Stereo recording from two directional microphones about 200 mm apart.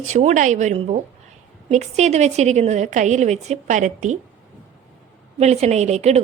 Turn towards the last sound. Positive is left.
turn(degrees=-35)  # may be behind; listen again after turning